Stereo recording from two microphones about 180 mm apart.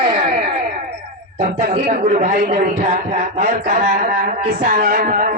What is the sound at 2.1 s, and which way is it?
Speech, 45° right (ahead or behind).